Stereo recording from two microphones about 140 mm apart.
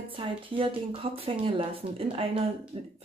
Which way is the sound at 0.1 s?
40° right (ahead or behind).